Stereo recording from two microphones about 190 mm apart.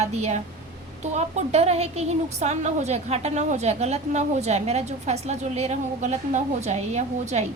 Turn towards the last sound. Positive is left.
turn(degrees=-35)  # may be behind; listen again after turning